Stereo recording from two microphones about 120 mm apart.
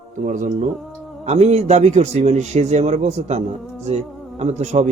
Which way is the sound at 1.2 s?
65° right (ahead or behind).